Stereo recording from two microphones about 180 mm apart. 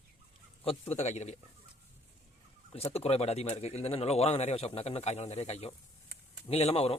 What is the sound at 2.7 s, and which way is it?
Speech, 35° left (ahead or behind).